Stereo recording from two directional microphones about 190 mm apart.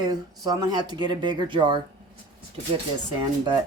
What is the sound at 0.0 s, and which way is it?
Speech, 20° right (ahead or behind).